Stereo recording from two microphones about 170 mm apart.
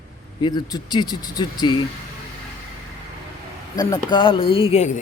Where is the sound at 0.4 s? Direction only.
25° left (ahead or behind).